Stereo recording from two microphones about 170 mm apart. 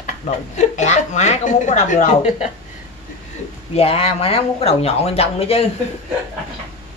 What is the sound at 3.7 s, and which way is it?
Speech, 35° left (ahead or behind).